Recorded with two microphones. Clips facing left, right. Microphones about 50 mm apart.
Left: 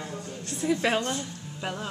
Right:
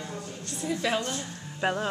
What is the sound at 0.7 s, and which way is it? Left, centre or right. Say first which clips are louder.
Speech: left 3 dB; left.